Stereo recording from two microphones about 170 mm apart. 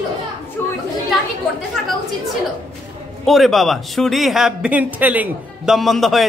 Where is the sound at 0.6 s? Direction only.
15° left (ahead or behind).